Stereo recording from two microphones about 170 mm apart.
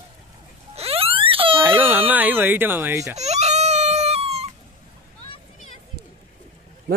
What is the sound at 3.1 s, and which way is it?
Baby cry, 40° right (ahead or behind).